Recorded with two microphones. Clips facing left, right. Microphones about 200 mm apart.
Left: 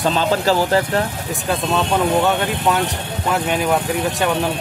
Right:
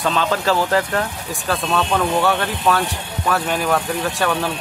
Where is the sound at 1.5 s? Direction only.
20° left (ahead or behind).